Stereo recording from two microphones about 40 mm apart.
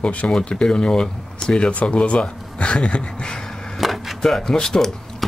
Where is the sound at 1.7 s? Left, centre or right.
Left.